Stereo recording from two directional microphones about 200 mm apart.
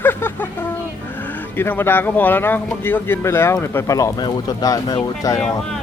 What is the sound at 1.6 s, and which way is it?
A man's voice, 10° left (ahead or behind).